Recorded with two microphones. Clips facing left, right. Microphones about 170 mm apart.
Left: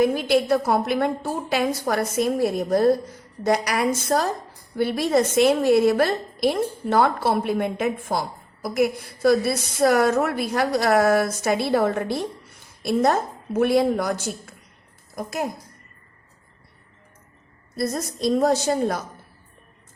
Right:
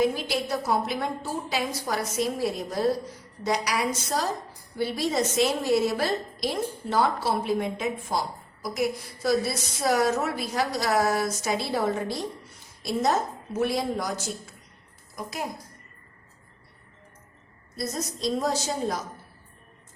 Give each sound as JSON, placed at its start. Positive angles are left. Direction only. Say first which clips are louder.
{"t": 0.0, "sound": "a woman's voice", "louder": "left 6 dB", "side_deg": 55}
{"t": 17.7, "sound": "a woman's voice", "louder": "left 6 dB", "side_deg": 55}